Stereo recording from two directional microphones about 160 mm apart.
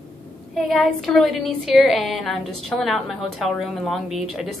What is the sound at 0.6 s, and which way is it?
A woman's voice, centre (ahead or behind).